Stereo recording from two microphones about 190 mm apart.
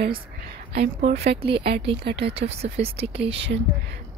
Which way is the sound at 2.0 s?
60° right (ahead or behind).